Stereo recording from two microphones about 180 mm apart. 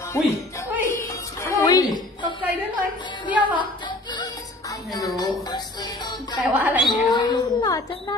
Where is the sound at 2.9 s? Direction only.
25° left (ahead or behind).